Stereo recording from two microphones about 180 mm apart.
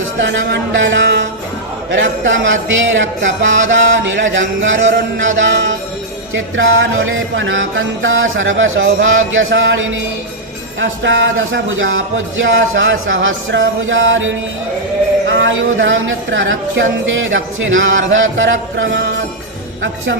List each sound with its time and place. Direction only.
0.2 s music: 80° right
1.9 s speech: 90° right